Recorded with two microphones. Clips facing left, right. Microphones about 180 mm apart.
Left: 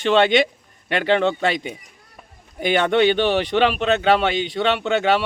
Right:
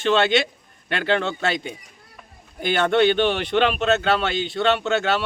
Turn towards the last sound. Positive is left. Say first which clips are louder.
# left 3 dB
turn(degrees=15)  # may be behind; listen again after turning